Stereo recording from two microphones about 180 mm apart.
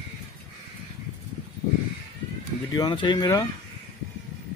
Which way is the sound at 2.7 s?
25° left (ahead or behind).